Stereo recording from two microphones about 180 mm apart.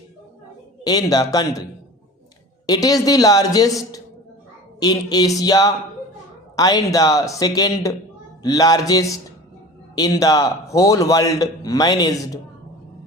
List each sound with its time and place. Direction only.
0.9 s a man's voice: 20° left (ahead or behind)
2.6 s a man's voice: 20° left (ahead or behind)
4.8 s a man's voice: 20° left (ahead or behind)